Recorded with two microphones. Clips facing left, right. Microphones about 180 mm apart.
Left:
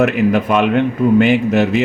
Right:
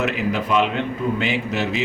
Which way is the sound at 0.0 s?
55° left (ahead or behind).